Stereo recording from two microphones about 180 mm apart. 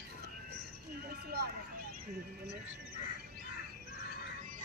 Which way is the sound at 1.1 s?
60° right (ahead or behind).